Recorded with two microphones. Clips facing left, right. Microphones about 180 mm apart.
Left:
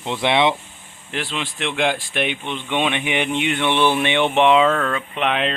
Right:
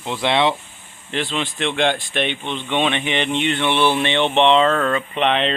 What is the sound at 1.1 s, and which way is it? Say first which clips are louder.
Speech: right 3 dB; 5° left (ahead or behind).